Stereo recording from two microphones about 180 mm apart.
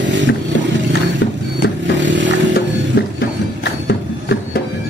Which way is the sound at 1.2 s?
75° left (ahead or behind).